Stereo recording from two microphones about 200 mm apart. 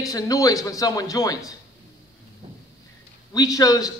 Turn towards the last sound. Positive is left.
turn(degrees=20)  # may be behind; listen again after turning